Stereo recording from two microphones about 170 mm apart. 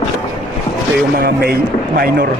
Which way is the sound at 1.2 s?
65° right (ahead or behind).